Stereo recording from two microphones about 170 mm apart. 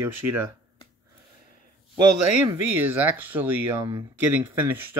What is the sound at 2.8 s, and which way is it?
Speech, 10° right (ahead or behind).